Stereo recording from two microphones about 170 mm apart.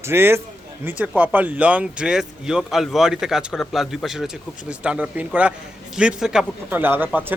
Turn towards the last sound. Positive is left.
turn(degrees=-10)  # may be behind; listen again after turning